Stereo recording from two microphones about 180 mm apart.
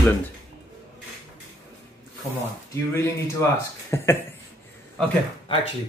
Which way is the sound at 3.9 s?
15° left (ahead or behind).